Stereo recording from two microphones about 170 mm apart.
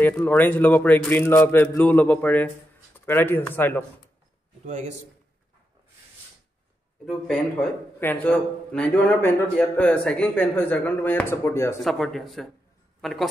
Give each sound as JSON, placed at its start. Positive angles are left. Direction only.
{"t": 0.0, "sound": "a man's voice", "side_deg": 10}
{"t": 4.6, "sound": "a man's voice", "side_deg": -45}
{"t": 7.1, "sound": "a man's voice", "side_deg": 5}
{"t": 11.8, "sound": "speech", "side_deg": 0}